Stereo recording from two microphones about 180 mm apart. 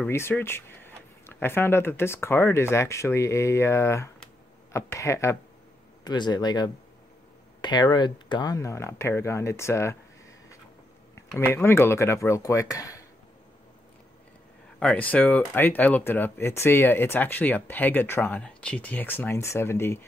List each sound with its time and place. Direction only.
0.0 s speech: 10° left (ahead or behind)
11.1 s speech: 15° left (ahead or behind)
14.8 s speech: 5° left (ahead or behind)